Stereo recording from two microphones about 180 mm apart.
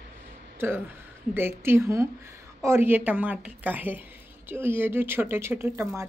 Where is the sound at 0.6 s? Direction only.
10° right (ahead or behind).